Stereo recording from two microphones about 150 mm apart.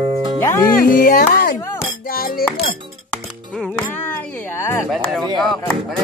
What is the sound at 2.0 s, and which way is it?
Music, 75° left (ahead or behind).